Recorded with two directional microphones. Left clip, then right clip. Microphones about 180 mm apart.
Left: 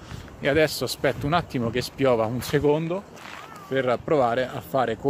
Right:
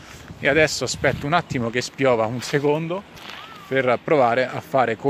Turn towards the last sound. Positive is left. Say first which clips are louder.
# right 4 dB
turn(degrees=-30)  # may be behind; listen again after turning